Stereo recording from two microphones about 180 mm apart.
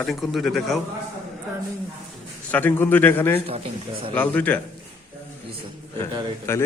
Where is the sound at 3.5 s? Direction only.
30° right (ahead or behind).